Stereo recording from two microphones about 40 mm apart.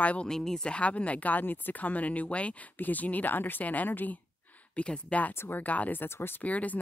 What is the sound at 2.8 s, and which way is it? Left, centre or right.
Speech, left.